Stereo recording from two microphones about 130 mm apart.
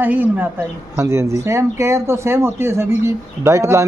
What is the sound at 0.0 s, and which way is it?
A woman's voice, 15° right (ahead or behind).